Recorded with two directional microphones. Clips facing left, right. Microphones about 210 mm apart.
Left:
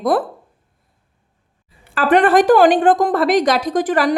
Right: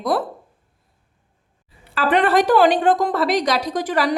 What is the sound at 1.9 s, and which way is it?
A woman's voice, 50° left (ahead or behind).